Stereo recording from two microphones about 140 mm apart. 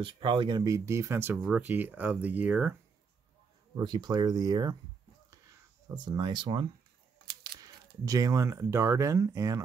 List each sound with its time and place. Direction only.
0.0 s speech: 35° right (ahead or behind); by 2.7 s 10° right (ahead or behind)
3.7 s speech: 30° right (ahead or behind)
5.3 s a sound: 30° right (ahead or behind)
8.0 s speech: 25° right (ahead or behind)